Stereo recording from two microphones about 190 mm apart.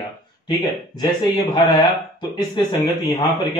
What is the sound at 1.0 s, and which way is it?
A man's voice, 20° left (ahead or behind).